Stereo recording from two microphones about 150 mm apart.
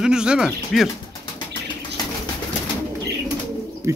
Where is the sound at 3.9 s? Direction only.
20° right (ahead or behind).